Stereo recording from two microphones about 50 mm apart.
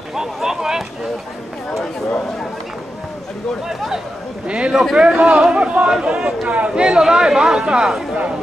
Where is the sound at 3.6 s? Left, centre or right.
Centre.